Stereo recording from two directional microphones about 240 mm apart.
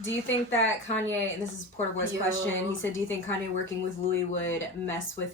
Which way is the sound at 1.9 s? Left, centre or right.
Left.